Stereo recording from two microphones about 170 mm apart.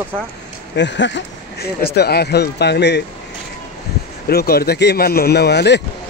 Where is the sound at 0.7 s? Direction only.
90° left.